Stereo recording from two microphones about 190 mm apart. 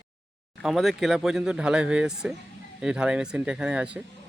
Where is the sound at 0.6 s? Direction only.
Centre (ahead or behind).